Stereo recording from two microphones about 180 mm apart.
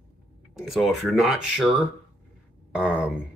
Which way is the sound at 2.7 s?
5° right (ahead or behind).